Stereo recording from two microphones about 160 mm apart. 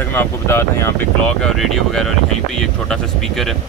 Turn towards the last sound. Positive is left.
turn(degrees=0)  # may be behind; listen again after turning